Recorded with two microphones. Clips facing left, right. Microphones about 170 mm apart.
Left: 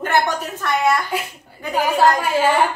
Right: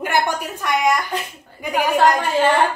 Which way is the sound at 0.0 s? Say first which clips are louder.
Left 1 dB; 10° right (ahead or behind).